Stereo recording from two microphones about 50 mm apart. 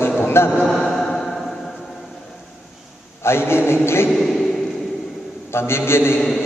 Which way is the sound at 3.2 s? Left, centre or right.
Left.